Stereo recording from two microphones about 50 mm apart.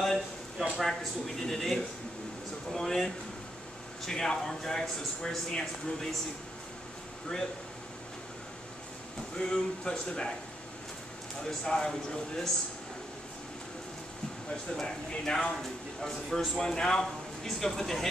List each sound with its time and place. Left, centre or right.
0.0 s a sound: centre
0.7 s speech: centre
9.4 s speech: centre
11.6 s speech: centre
14.8 s speech: centre